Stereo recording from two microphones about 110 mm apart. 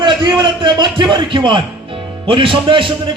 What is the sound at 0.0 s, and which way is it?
A man's voice, 45° right (ahead or behind).